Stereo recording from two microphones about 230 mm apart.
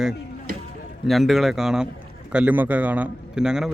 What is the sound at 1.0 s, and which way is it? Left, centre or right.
A man's voice, centre.